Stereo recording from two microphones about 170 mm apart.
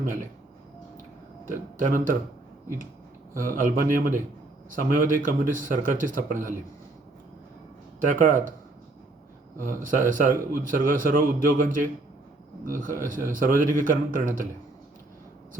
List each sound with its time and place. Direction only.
1.5 s a man's voice: 55° right (ahead or behind)
3.3 s a man's voice: 50° right (ahead or behind)
8.0 s a man's voice: 50° right (ahead or behind)
9.6 s a man's voice: 55° right (ahead or behind)